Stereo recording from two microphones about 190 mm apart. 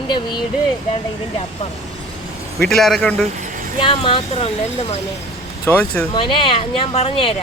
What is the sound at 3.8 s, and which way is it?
Speech, 25° left (ahead or behind).